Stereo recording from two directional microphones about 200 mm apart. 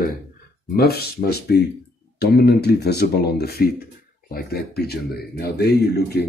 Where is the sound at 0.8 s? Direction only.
50° left (ahead or behind).